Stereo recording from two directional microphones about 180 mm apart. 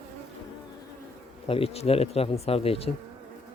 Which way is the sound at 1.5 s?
35° left (ahead or behind).